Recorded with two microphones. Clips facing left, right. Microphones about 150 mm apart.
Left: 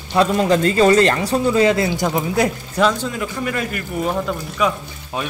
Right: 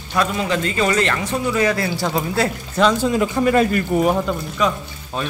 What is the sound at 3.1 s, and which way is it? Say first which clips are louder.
Speech: right 7 dB; 30° right (ahead or behind).